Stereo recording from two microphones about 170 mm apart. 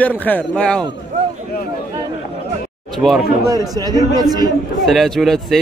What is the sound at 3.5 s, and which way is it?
A man's voice, 20° right (ahead or behind).